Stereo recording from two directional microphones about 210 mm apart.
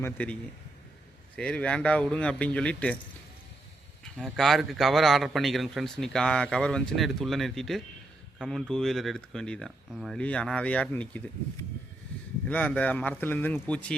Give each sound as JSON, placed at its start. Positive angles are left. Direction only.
{"t": 0.0, "sound": "a man's voice", "side_deg": 5}
{"t": 1.4, "sound": "a man's voice", "side_deg": 5}
{"t": 4.0, "sound": "a man's voice", "side_deg": 0}